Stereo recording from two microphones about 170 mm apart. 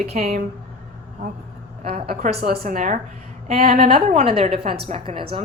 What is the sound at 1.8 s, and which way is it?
Speech, 35° right (ahead or behind).